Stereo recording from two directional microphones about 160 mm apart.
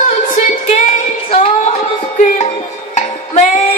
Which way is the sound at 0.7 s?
50° left (ahead or behind).